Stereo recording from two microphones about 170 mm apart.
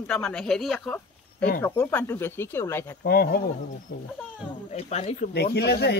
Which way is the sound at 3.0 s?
65° left (ahead or behind).